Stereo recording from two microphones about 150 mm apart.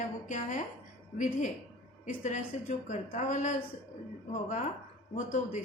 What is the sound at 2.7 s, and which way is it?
A woman's voice, 55° left (ahead or behind).